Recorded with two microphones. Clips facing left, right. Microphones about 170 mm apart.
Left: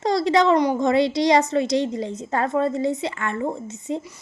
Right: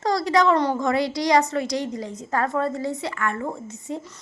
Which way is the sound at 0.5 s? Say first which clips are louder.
Left 3 dB; 15° left (ahead or behind).